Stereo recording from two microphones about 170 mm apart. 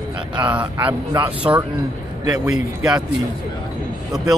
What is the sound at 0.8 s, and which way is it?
Speech, 30° right (ahead or behind).